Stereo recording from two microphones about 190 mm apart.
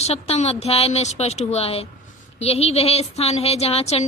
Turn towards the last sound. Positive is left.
turn(degrees=35)  # may be behind; listen again after turning